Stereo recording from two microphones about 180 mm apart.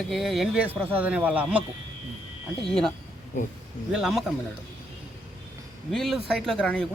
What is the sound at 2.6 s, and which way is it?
Speech, centre (ahead or behind).